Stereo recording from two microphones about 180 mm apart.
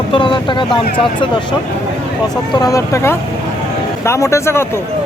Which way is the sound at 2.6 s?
20° left (ahead or behind).